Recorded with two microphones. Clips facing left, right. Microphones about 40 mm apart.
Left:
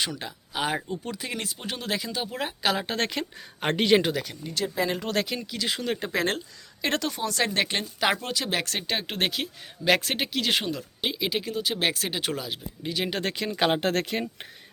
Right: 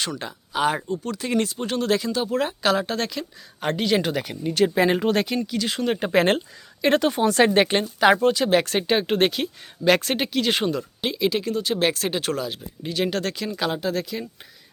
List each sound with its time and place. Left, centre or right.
0.0 s speech: centre
0.9 s speech: centre
1.2 s speech: centre
2.8 s speech: left
3.1 s speech: left
4.1 s a woman's voice: centre
4.5 s speech: right
5.0 s speech: centre
6.0 s speech: right
7.4 s a woman's voice: right
7.8 s speech: centre
13.1 s speech: left
13.6 s speech: left